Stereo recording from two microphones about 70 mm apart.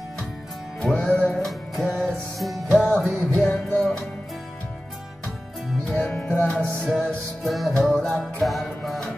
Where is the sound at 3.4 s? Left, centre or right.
Centre.